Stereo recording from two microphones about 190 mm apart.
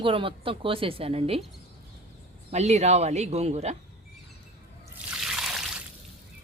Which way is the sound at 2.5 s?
35° right (ahead or behind).